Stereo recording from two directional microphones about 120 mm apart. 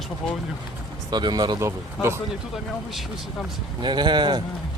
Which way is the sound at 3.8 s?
40° right (ahead or behind).